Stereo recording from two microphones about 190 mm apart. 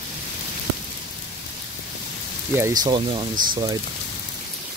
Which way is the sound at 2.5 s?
15° right (ahead or behind).